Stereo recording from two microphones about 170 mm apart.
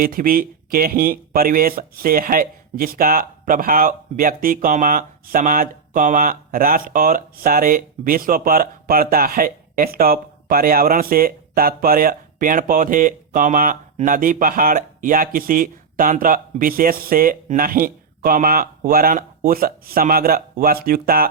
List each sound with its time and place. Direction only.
0.0 s speech: 55° right (ahead or behind)